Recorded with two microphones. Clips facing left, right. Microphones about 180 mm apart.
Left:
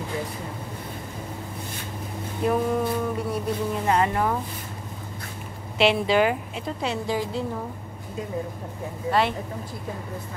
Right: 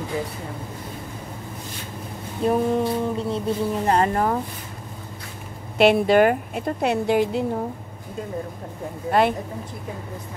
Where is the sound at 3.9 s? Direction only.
40° right (ahead or behind).